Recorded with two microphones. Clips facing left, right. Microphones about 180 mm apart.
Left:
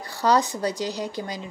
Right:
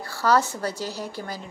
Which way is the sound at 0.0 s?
20° left (ahead or behind).